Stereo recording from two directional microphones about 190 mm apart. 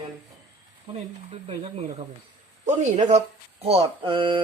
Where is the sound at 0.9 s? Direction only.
30° right (ahead or behind).